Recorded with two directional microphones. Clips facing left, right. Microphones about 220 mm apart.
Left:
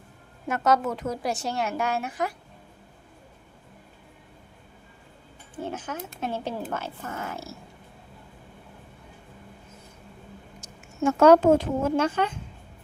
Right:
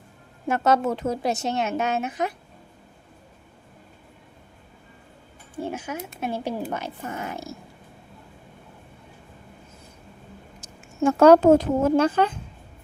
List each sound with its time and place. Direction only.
0.4 s a woman's voice: 30° right (ahead or behind)
5.5 s speech: 10° right (ahead or behind)
10.6 s speech: 35° right (ahead or behind)